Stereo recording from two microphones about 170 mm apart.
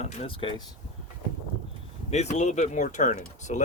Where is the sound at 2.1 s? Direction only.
40° left (ahead or behind).